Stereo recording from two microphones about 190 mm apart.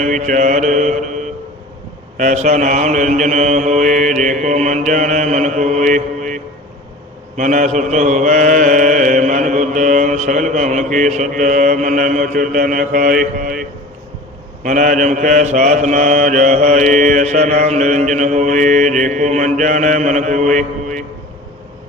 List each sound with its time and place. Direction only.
0.0 s mantra: 40° right (ahead or behind)
14.6 s mantra: 40° right (ahead or behind)